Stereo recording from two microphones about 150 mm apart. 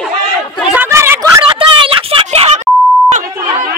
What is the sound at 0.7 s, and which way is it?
Chatter, 15° right (ahead or behind).